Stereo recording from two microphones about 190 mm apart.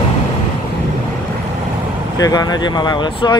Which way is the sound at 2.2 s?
20° left (ahead or behind).